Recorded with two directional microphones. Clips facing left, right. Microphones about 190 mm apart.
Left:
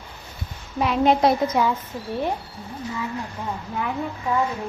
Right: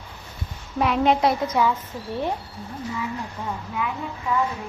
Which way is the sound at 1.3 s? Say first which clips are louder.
Left 1 dB; 15° left (ahead or behind).